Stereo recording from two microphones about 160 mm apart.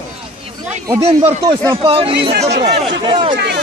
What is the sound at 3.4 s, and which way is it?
Speech, 90° right.